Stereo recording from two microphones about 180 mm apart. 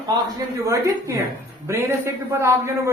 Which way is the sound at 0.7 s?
15° right (ahead or behind).